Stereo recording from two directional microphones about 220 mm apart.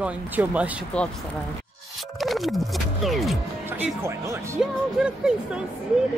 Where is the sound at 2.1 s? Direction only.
Centre (ahead or behind).